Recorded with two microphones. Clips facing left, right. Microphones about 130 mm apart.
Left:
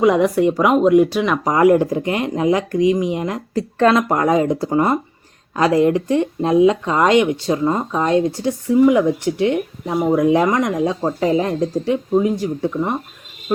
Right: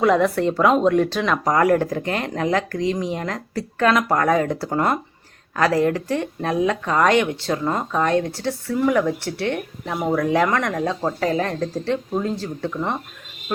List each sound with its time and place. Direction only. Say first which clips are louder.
0.0 s speech: left 3 dB; 15° left (ahead or behind)
3.8 s speech: left 4 dB; 30° left (ahead or behind)
4.1 s speech: left 3 dB; 20° left (ahead or behind)